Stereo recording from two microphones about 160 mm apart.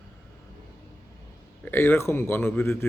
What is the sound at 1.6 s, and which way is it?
Speech, 15° left (ahead or behind).